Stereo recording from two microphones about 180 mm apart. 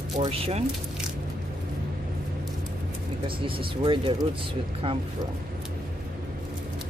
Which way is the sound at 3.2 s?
30° right (ahead or behind).